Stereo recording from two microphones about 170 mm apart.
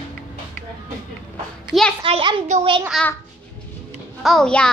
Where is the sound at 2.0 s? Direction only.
30° right (ahead or behind).